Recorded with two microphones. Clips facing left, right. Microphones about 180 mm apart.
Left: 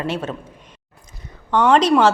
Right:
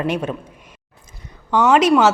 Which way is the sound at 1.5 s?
10° right (ahead or behind).